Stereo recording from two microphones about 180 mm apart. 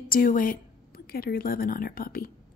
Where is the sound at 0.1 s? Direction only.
50° left (ahead or behind).